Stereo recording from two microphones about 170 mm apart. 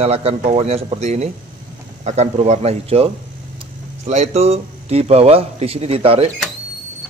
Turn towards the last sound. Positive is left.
turn(degrees=-35)  # may be behind; listen again after turning